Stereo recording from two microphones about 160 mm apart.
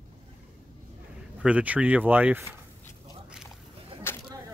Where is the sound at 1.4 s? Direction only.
10° right (ahead or behind).